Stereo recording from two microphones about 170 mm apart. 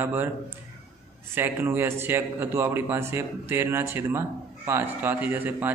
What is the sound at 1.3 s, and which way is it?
Speech, 10° right (ahead or behind).